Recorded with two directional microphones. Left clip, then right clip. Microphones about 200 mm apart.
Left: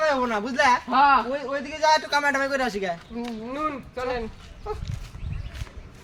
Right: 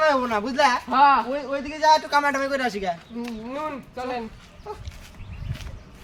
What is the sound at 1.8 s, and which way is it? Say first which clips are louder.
Speech: right 2 dB; 20° left (ahead or behind).